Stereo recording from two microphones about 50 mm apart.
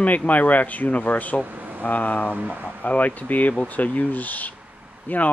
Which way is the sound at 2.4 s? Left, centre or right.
Right.